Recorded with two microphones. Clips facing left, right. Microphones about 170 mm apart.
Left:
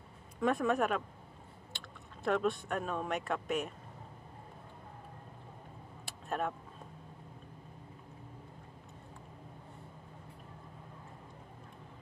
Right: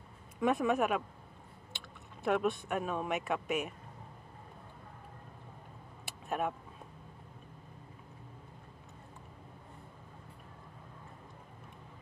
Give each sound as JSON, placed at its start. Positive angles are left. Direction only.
{"t": 0.4, "sound": "speech", "side_deg": 0}
{"t": 2.2, "sound": "speech", "side_deg": -5}
{"t": 6.0, "sound": "vehicle", "side_deg": -5}